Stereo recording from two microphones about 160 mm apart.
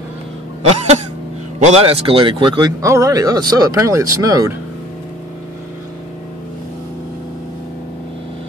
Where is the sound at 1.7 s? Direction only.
35° right (ahead or behind); by 4.6 s 20° right (ahead or behind).